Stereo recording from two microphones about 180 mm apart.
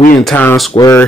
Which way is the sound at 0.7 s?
15° left (ahead or behind).